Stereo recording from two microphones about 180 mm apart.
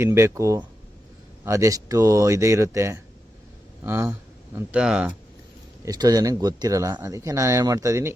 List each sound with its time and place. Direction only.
0.0 s speech: 15° right (ahead or behind)
5.8 s speech: 20° right (ahead or behind)